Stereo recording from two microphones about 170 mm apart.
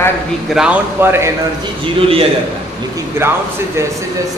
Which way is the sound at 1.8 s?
35° right (ahead or behind).